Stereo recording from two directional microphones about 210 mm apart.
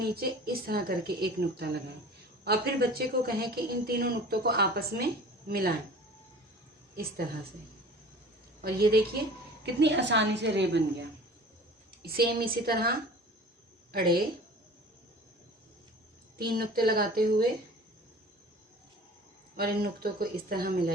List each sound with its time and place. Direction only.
0.0 s a woman's voice: 45° right (ahead or behind)
8.6 s a woman's voice: 45° right (ahead or behind)
12.0 s a woman's voice: 45° right (ahead or behind)
13.9 s a woman's voice: 45° right (ahead or behind)
16.4 s a woman's voice: 45° right (ahead or behind)
19.5 s a woman's voice: 45° right (ahead or behind)